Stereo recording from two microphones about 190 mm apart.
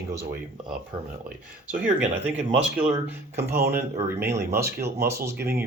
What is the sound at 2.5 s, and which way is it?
Speech, 25° right (ahead or behind).